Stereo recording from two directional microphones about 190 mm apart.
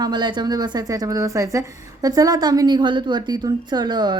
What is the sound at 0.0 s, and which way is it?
A woman's voice, 25° right (ahead or behind).